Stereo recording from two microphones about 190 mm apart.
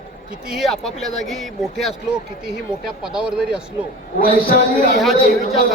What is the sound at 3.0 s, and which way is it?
Speech, 5° right (ahead or behind).